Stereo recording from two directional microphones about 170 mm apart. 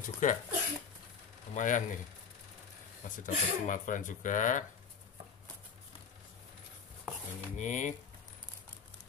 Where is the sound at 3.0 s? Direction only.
50° left (ahead or behind).